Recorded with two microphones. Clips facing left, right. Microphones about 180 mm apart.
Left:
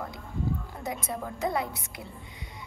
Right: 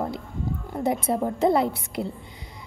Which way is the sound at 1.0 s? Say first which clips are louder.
Right 8 dB; 30° right (ahead or behind).